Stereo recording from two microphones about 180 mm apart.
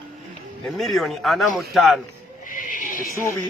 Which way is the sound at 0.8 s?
Centre (ahead or behind).